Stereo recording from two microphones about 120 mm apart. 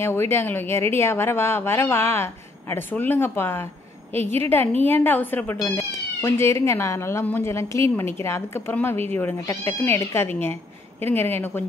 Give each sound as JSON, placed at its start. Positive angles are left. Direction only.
{"t": 0.0, "sound": "a woman's voice", "side_deg": 20}